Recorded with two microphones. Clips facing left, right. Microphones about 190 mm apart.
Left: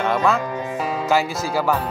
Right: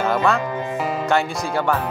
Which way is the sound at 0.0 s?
Centre (ahead or behind).